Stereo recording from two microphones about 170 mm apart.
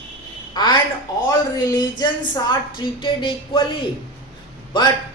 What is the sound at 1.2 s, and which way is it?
Speech, 20° left (ahead or behind).